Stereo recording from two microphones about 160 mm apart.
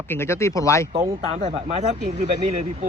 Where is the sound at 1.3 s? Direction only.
40° right (ahead or behind).